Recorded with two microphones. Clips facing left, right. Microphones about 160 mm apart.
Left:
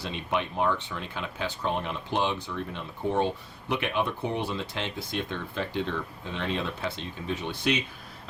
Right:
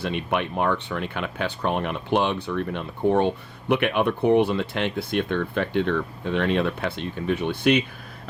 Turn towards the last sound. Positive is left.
turn(degrees=-60)  # may be behind; listen again after turning